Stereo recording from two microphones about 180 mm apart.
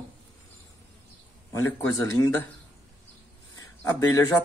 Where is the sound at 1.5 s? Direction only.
15° left (ahead or behind).